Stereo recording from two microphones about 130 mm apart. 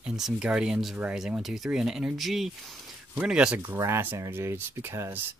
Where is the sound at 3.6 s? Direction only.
20° right (ahead or behind).